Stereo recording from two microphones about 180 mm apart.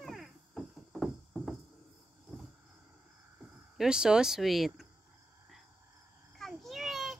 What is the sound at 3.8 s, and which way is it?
Speech, 5° right (ahead or behind).